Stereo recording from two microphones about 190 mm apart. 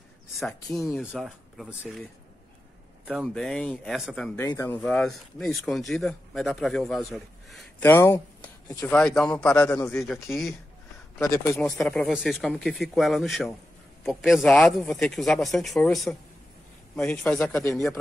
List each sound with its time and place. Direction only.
0.4 s speech: centre (ahead or behind)
3.1 s speech: centre (ahead or behind)
4.5 s speech: 15° left (ahead or behind)
4.8 s speech: 5° left (ahead or behind)
7.8 s speech: 10° left (ahead or behind)
10.2 s speech: centre (ahead or behind)
11.1 s speech: 15° left (ahead or behind)
11.6 s speech: 5° left (ahead or behind)